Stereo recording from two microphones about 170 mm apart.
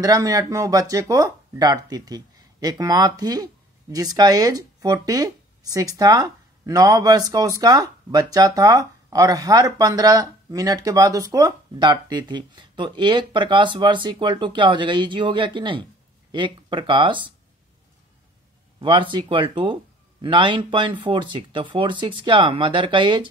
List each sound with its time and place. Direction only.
0.0 s speech: 20° right (ahead or behind)
18.8 s speech: 30° right (ahead or behind)